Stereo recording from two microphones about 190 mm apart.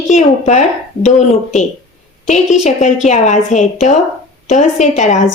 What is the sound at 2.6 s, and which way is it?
A woman's voice, 40° left (ahead or behind).